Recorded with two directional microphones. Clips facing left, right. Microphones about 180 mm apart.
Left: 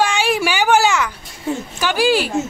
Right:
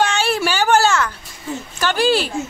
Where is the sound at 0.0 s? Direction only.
10° left (ahead or behind).